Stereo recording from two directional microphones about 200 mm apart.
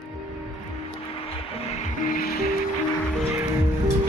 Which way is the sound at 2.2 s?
50° left (ahead or behind).